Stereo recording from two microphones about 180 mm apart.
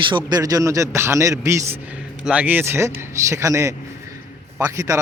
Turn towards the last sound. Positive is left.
turn(degrees=-15)  # may be behind; listen again after turning